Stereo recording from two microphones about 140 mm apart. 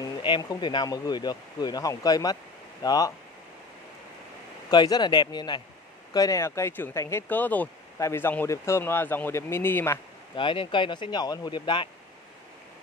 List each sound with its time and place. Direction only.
0.0 s speech: 30° left (ahead or behind)
4.6 s speech: 30° left (ahead or behind)
10.3 s speech: 40° left (ahead or behind)